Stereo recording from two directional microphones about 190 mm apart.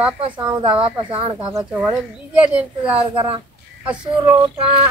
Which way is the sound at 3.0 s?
30° right (ahead or behind).